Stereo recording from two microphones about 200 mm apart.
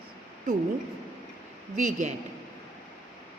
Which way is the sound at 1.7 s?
35° right (ahead or behind).